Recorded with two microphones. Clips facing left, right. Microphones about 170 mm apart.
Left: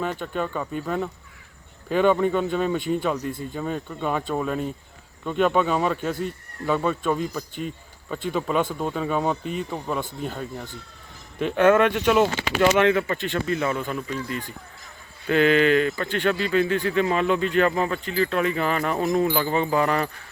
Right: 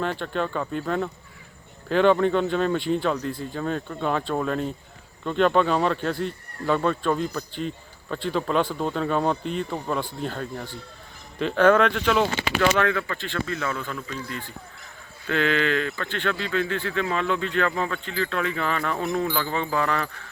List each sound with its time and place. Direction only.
0.0 s speech: 5° left (ahead or behind)
12.7 s speech: 20° left (ahead or behind)